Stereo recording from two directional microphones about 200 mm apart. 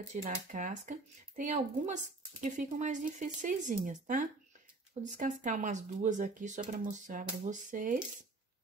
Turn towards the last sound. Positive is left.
turn(degrees=-40)  # may be behind; listen again after turning